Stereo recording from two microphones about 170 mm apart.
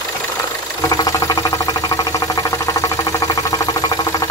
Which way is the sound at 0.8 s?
20° left (ahead or behind).